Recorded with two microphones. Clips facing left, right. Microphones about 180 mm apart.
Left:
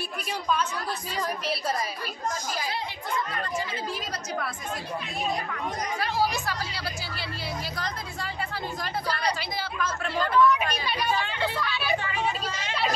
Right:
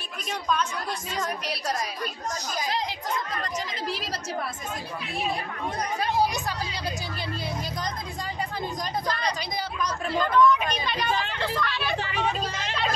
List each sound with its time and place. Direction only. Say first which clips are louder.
1.2 s a woman's voice: left 3 dB; 5° left (ahead or behind)
5.9 s speech: right 2 dB; 20° right (ahead or behind)
9.0 s a sound: even; 10° left (ahead or behind)